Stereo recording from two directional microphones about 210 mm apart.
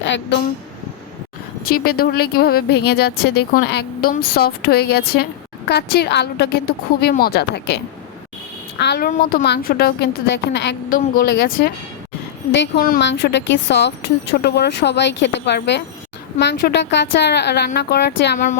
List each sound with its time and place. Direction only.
0.1 s a woman's voice: 55° left (ahead or behind)
1.6 s a woman's voice: 45° left (ahead or behind)
8.8 s a woman's voice: 55° left (ahead or behind)
9.0 s a woman's voice: 45° left (ahead or behind)
10.8 s a woman's voice: 40° left (ahead or behind)
12.5 s a woman's voice: 45° left (ahead or behind)